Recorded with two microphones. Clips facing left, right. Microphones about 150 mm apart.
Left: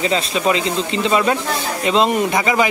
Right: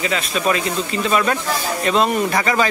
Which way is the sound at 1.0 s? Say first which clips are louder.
Left 2 dB; 20° left (ahead or behind).